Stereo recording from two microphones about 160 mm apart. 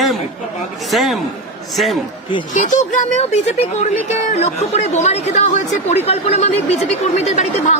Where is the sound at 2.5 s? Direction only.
50° left (ahead or behind).